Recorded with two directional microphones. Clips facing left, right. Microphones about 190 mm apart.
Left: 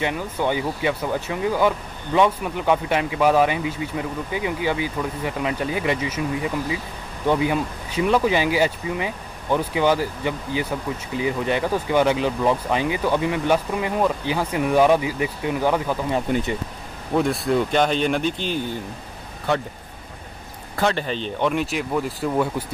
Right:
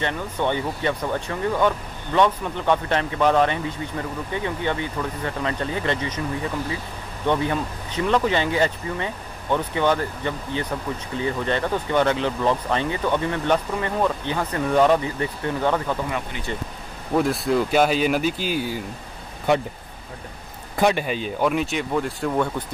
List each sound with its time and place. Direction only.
0.0 s speech: 5° left (ahead or behind)
16.3 s speech: 50° left (ahead or behind)
17.1 s speech: centre (ahead or behind)
20.7 s speech: 15° right (ahead or behind); by 22.7 s 5° left (ahead or behind)